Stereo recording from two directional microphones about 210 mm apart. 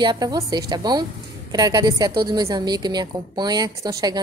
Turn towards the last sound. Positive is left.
turn(degrees=-20)  # may be behind; listen again after turning